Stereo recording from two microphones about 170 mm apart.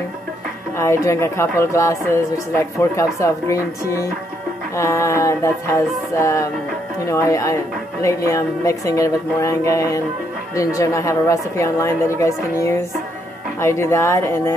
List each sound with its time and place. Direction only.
0.7 s speech: 15° left (ahead or behind)